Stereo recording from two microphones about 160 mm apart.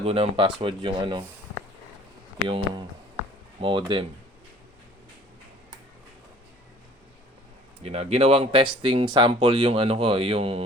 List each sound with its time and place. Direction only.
0.0 s speech: 35° right (ahead or behind)
3.6 s speech: 30° right (ahead or behind)
7.8 s speech: 40° right (ahead or behind)